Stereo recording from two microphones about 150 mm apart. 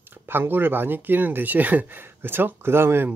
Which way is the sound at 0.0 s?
15° right (ahead or behind).